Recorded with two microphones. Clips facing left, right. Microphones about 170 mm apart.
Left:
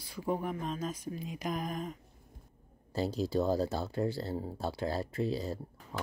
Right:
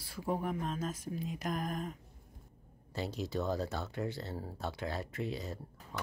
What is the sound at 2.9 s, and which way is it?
A woman's voice, 35° left (ahead or behind).